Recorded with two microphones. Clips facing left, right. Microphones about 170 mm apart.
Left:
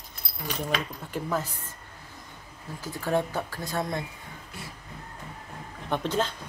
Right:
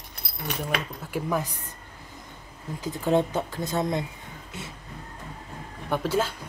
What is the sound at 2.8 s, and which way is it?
Speech, 20° right (ahead or behind).